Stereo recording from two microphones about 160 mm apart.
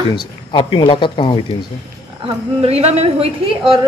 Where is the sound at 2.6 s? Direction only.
40° right (ahead or behind).